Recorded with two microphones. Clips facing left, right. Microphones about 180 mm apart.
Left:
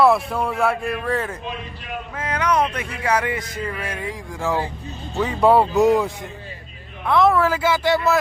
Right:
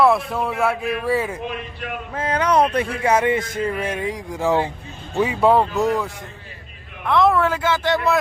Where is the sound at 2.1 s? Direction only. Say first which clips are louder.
Right 3 dB; 30° right (ahead or behind).